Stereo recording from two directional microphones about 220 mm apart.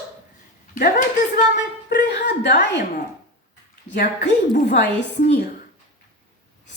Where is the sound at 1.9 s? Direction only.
50° left (ahead or behind).